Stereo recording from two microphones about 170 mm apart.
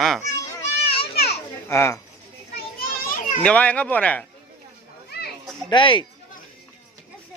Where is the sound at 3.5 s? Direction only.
10° left (ahead or behind).